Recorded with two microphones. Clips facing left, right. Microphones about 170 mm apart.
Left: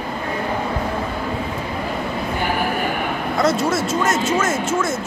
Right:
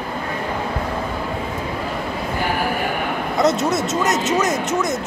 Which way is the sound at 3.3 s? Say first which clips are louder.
Right 1 dB; 20° right (ahead or behind).